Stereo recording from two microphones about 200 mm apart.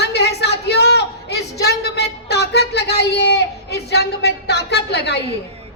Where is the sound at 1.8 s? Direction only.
55° left (ahead or behind).